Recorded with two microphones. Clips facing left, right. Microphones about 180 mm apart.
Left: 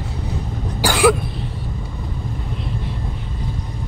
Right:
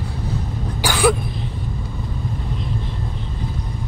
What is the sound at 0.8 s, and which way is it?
Throat clearing, 10° left (ahead or behind).